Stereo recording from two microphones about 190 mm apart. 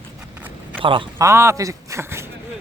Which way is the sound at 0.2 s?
5° right (ahead or behind).